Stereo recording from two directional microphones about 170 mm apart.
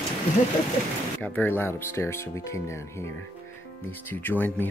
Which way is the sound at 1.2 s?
10° left (ahead or behind).